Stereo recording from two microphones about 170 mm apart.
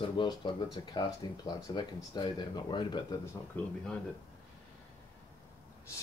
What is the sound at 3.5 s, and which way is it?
Speech, 10° left (ahead or behind).